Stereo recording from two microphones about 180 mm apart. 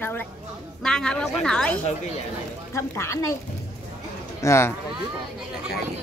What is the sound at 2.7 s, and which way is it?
Speech, 15° left (ahead or behind).